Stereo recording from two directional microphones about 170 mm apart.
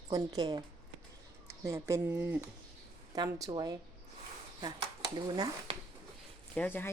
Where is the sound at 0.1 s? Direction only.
20° right (ahead or behind).